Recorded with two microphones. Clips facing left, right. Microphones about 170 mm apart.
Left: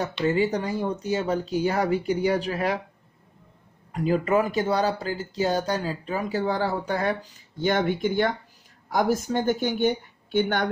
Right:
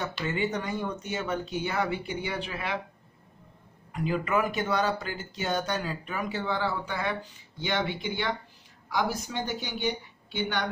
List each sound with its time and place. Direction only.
0.2 s speech: 35° left (ahead or behind)
3.9 s a woman's voice: 40° left (ahead or behind)